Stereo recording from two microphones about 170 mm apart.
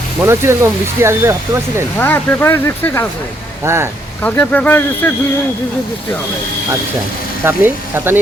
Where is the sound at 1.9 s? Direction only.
10° left (ahead or behind).